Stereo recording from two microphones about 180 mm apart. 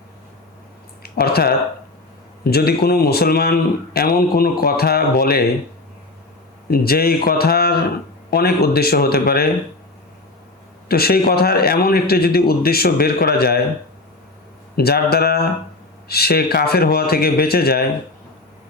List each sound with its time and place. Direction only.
1.0 s a man's voice: 60° left (ahead or behind)
6.7 s a man's voice: 55° left (ahead or behind)
10.8 s a man's voice: 60° left (ahead or behind)
14.8 s a man's voice: 60° left (ahead or behind)